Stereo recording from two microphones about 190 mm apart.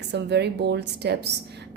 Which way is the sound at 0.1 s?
60° right (ahead or behind).